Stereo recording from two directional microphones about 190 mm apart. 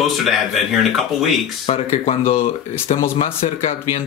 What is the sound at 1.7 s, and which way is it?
Speech, 30° left (ahead or behind).